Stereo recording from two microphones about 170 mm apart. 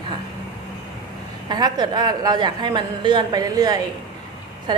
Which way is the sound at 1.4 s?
25° right (ahead or behind).